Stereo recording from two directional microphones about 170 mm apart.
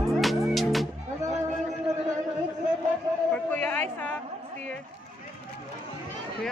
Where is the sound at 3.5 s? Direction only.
10° left (ahead or behind).